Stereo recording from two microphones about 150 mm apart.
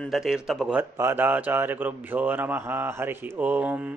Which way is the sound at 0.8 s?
15° right (ahead or behind).